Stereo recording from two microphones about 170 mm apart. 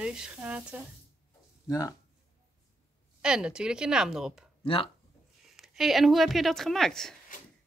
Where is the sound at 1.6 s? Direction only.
20° left (ahead or behind).